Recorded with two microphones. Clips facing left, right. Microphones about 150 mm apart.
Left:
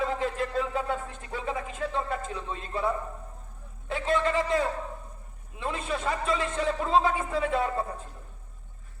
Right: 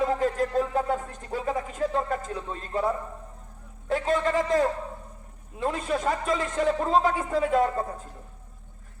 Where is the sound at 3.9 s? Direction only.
40° right (ahead or behind).